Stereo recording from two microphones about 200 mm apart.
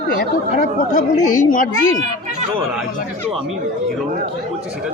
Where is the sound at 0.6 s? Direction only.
40° left (ahead or behind).